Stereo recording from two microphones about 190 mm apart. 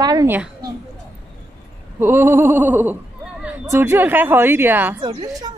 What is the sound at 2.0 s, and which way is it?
A woman's voice, 10° right (ahead or behind).